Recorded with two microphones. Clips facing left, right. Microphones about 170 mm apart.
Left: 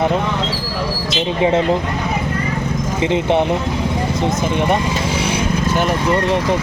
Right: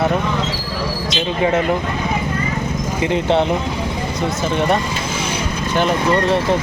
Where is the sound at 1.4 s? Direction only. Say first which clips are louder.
Left 2 dB; 20° left (ahead or behind).